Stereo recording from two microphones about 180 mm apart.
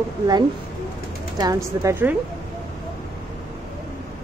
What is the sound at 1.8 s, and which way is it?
Speech, 15° right (ahead or behind).